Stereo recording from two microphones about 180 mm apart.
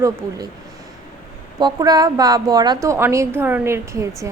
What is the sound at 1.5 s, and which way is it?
A woman's voice, 20° right (ahead or behind).